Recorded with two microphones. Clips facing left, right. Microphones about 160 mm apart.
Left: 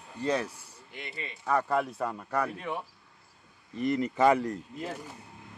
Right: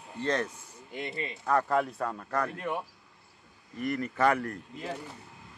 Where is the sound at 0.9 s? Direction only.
Centre (ahead or behind).